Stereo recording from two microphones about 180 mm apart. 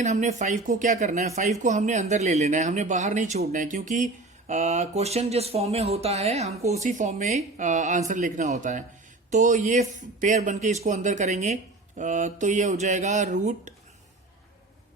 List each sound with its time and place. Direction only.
0.0 s speech: 40° right (ahead or behind)